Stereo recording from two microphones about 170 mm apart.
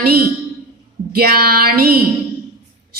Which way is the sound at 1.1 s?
60° right (ahead or behind).